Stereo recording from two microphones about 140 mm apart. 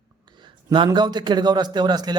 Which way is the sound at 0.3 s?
35° right (ahead or behind).